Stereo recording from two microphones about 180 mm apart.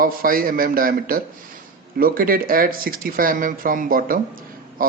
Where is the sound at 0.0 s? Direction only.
55° right (ahead or behind).